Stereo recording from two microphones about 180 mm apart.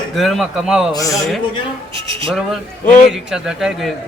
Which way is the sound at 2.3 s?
Centre (ahead or behind).